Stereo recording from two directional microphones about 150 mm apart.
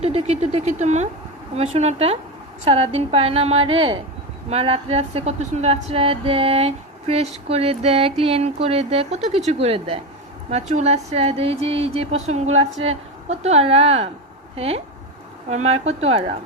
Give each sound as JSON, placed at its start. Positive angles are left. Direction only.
{"t": 0.0, "sound": "speech", "side_deg": -45}